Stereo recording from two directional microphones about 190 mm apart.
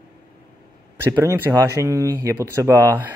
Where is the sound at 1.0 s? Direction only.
15° right (ahead or behind).